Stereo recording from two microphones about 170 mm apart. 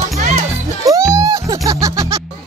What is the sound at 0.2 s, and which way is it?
Music, 45° right (ahead or behind).